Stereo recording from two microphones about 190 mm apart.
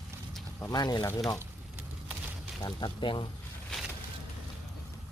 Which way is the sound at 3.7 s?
5° left (ahead or behind).